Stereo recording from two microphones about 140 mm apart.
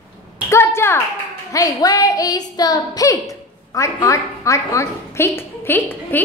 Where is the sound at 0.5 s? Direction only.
20° left (ahead or behind).